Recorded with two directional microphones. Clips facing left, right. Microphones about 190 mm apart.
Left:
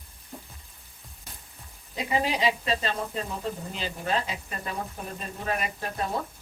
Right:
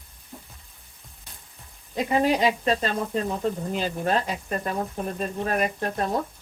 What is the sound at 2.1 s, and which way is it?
Speech, 50° right (ahead or behind).